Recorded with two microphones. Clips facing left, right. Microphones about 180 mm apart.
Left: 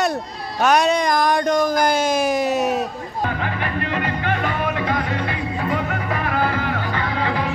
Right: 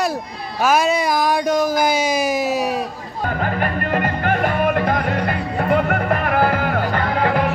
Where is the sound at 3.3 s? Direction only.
45° right (ahead or behind).